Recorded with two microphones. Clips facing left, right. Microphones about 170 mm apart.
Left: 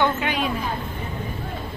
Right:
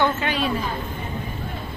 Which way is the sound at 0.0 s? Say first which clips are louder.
Even; 10° left (ahead or behind).